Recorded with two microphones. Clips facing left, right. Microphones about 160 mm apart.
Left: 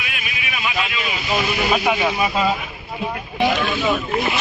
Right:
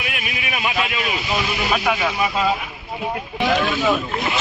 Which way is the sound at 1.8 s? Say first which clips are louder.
Left 2 dB; 15° left (ahead or behind).